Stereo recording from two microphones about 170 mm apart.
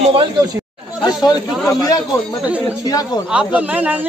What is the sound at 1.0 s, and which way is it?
Chatter, 25° left (ahead or behind).